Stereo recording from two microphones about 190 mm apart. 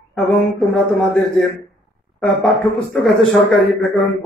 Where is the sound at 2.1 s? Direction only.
Centre (ahead or behind).